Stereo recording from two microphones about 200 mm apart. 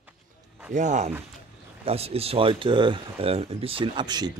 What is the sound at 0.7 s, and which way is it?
Speech, 35° right (ahead or behind).